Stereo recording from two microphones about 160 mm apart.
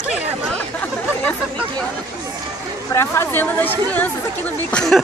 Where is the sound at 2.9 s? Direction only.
15° left (ahead or behind).